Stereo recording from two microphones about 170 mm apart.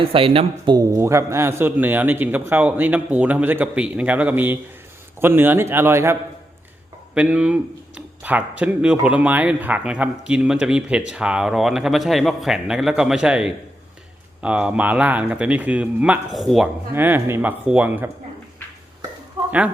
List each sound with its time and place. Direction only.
0.0 s a man's voice: 35° right (ahead or behind); by 16.6 s centre (ahead or behind)
16.9 s speech: 10° right (ahead or behind)
19.5 s speech: 10° right (ahead or behind)